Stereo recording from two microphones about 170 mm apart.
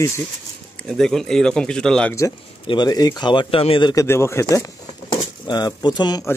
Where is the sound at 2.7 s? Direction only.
25° left (ahead or behind).